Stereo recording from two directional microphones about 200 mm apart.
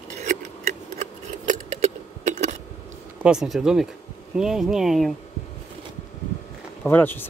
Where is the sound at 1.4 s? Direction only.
40° right (ahead or behind).